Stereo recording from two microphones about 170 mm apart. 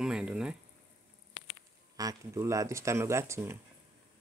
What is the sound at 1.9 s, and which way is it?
Speech, 20° right (ahead or behind).